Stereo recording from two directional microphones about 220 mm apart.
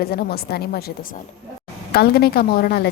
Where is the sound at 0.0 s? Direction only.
45° left (ahead or behind).